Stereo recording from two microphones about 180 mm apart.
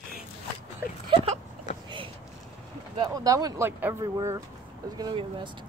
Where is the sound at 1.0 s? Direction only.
30° right (ahead or behind).